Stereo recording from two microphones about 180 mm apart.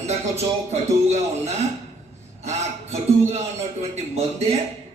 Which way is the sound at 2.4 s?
40° right (ahead or behind).